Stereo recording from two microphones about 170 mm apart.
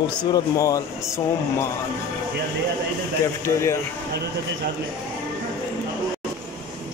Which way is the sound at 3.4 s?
15° left (ahead or behind).